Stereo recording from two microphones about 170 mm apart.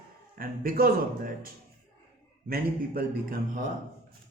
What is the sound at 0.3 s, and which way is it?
A man's voice, 60° right (ahead or behind).